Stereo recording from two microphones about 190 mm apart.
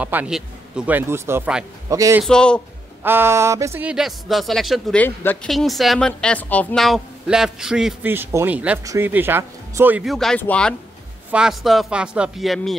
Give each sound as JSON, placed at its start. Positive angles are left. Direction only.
{"t": 0.0, "sound": "speech", "side_deg": -5}
{"t": 1.9, "sound": "speech", "side_deg": -15}
{"t": 2.2, "sound": "a woman's voice", "side_deg": 5}
{"t": 3.0, "sound": "a woman's voice", "side_deg": -10}
{"t": 10.1, "sound": "a woman's voice", "side_deg": 5}